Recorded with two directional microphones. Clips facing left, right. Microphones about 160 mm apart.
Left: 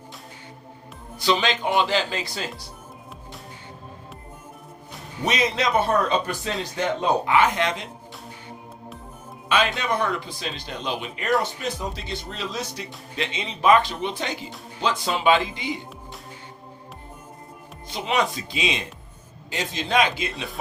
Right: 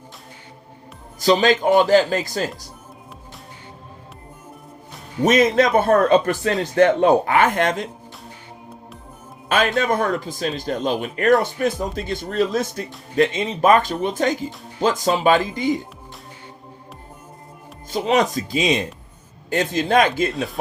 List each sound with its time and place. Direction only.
1.2 s speech: 45° right (ahead or behind)
5.2 s speech: 50° right (ahead or behind)
9.5 s speech: 45° right (ahead or behind)
17.8 s speech: 45° right (ahead or behind)
20.3 s speech: centre (ahead or behind)